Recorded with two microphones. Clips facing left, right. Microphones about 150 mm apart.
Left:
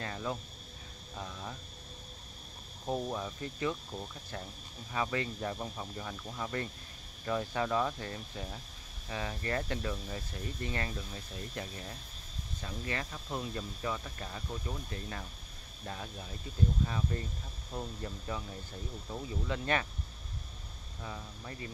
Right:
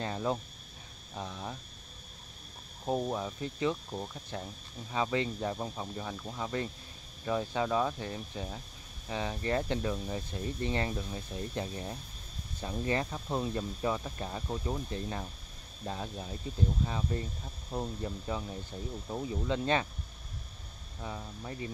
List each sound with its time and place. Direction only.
0.0 s speech: 25° right (ahead or behind)
2.8 s speech: 15° right (ahead or behind)
21.0 s speech: 15° right (ahead or behind)